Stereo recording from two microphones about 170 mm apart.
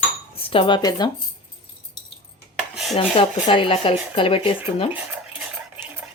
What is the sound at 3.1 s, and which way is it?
Speech, 30° left (ahead or behind).